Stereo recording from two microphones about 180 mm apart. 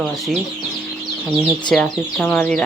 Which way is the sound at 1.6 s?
5° left (ahead or behind).